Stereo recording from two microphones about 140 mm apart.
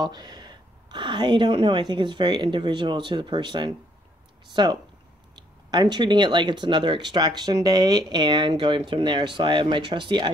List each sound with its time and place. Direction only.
0.0 s speech: 30° right (ahead or behind)